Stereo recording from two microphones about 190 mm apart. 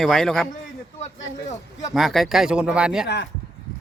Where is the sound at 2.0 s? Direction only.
Centre (ahead or behind).